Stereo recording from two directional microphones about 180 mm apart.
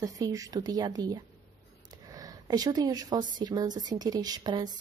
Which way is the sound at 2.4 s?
20° right (ahead or behind).